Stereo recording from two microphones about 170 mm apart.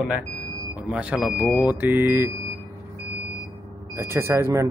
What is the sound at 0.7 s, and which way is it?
Speech, 10° right (ahead or behind).